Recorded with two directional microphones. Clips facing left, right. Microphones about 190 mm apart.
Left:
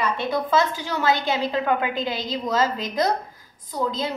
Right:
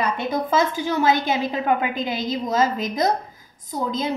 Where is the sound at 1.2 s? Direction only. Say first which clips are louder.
Right 1 dB; 15° right (ahead or behind).